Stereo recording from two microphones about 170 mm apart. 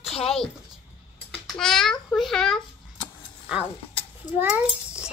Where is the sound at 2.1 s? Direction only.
Centre (ahead or behind).